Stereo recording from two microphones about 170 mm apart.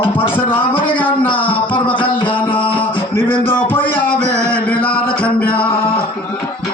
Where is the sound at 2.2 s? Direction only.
30° left (ahead or behind).